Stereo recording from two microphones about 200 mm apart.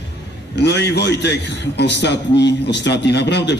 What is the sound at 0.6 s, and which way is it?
A man's voice, 55° left (ahead or behind).